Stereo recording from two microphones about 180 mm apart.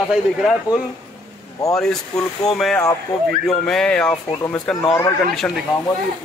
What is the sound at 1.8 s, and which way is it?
Speech, 5° left (ahead or behind).